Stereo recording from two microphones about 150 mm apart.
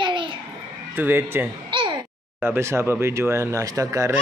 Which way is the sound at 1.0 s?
15° right (ahead or behind).